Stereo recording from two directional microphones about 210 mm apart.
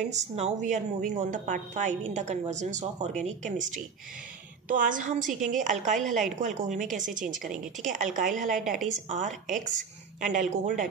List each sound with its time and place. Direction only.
0.0 s a woman's voice: 35° right (ahead or behind)